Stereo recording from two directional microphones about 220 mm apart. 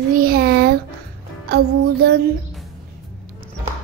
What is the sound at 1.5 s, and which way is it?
Music, 45° right (ahead or behind).